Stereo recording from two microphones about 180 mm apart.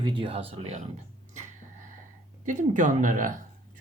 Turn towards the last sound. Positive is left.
turn(degrees=-45)  # may be behind; listen again after turning